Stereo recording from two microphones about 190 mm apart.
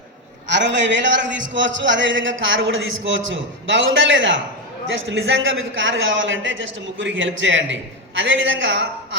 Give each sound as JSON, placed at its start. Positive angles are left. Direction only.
{"t": 0.4, "sound": "a man's voice", "side_deg": -65}